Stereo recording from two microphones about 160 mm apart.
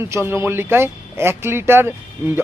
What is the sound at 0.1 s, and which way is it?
A man's voice, 15° right (ahead or behind).